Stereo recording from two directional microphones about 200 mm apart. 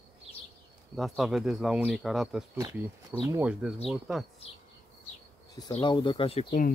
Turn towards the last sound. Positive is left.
turn(degrees=30)  # may be behind; listen again after turning